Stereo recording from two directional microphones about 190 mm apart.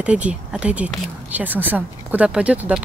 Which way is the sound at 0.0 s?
5° right (ahead or behind).